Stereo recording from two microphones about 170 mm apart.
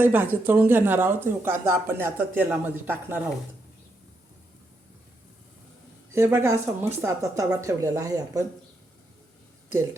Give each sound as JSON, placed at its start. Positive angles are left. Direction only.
{"t": 0.0, "sound": "speech", "side_deg": -10}
{"t": 6.1, "sound": "speech", "side_deg": -15}